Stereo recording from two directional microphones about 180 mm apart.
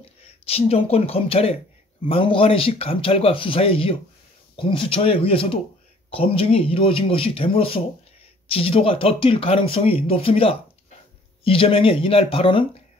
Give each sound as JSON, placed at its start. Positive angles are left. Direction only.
{"t": 0.5, "sound": "speech", "side_deg": 35}